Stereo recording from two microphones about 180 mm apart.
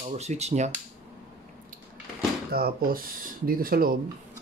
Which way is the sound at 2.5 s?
55° right (ahead or behind).